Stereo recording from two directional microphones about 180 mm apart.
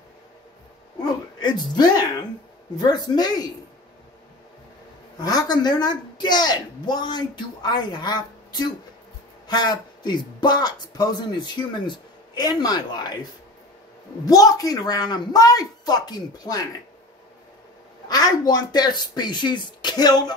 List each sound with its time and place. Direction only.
1.0 s speech: 25° left (ahead or behind)
5.2 s speech: 20° left (ahead or behind)
14.2 s speech: 20° left (ahead or behind)
18.0 s speech: 20° left (ahead or behind)